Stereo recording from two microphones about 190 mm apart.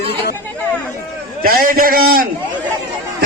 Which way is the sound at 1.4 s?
50° right (ahead or behind).